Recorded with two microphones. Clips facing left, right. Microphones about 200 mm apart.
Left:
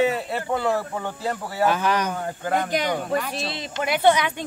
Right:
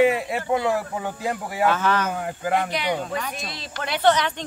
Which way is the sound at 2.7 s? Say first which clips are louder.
Left 1 dB; 45° left (ahead or behind).